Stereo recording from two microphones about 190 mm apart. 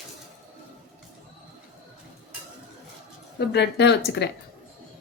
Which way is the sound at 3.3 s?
65° left (ahead or behind).